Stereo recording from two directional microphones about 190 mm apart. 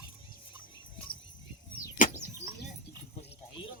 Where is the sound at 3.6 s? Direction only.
30° left (ahead or behind).